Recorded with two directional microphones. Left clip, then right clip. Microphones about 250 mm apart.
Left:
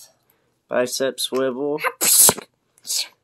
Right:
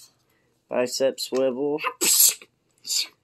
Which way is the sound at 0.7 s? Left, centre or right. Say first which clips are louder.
Left 2 dB; left.